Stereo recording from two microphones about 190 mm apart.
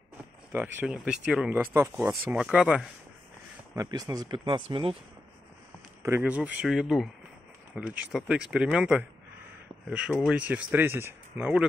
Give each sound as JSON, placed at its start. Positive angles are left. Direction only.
{"t": 0.5, "sound": "speech", "side_deg": -10}
{"t": 3.7, "sound": "speech", "side_deg": -20}
{"t": 6.0, "sound": "speech", "side_deg": -10}